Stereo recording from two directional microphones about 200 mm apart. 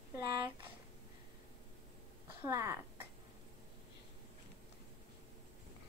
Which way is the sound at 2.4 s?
15° right (ahead or behind).